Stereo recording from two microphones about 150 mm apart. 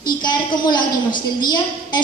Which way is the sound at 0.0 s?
30° left (ahead or behind).